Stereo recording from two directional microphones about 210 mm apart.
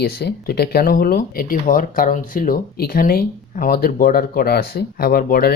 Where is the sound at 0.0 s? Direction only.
45° left (ahead or behind).